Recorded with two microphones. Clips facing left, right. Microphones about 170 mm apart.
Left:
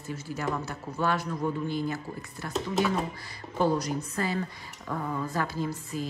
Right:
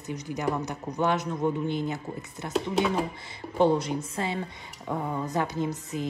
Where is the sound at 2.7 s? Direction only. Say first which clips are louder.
Even; centre (ahead or behind).